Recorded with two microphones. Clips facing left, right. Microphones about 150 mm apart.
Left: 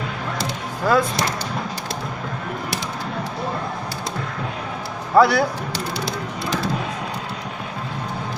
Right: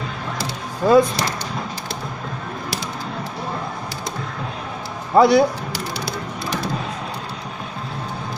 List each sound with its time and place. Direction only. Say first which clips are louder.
0.8 s speech: right 5 dB; 20° right (ahead or behind)
5.1 s speech: right 2 dB; 20° right (ahead or behind)